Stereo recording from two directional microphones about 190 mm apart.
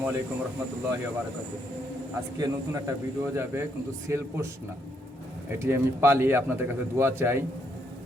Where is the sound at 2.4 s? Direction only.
20° right (ahead or behind).